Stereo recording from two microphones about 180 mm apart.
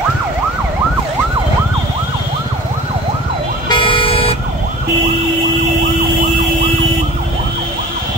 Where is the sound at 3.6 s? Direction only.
25° left (ahead or behind).